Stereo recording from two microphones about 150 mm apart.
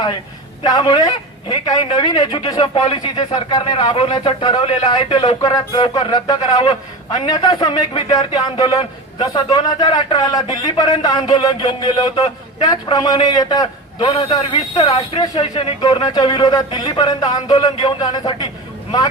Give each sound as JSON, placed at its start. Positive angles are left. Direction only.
{"t": 0.6, "sound": "a man's voice", "side_deg": 25}
{"t": 5.4, "sound": "a man's voice", "side_deg": 25}